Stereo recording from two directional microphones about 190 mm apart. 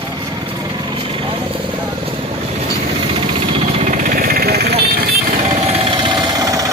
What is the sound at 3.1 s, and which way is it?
Jackhammer, 30° right (ahead or behind).